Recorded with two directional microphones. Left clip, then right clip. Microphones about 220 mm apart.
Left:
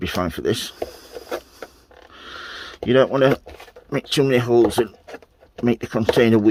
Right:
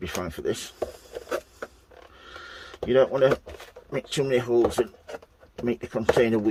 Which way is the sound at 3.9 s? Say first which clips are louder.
Left 6 dB; 50° left (ahead or behind).